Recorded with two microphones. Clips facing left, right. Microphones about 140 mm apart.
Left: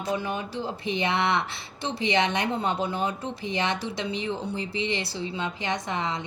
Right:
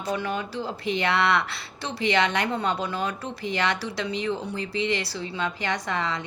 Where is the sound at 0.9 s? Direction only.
20° left (ahead or behind).